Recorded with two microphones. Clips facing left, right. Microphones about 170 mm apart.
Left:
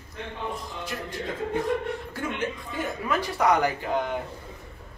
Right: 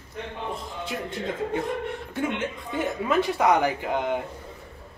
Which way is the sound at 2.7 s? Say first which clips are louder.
Right 5 dB; 20° right (ahead or behind).